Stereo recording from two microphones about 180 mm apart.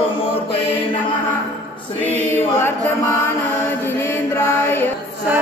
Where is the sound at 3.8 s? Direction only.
15° left (ahead or behind).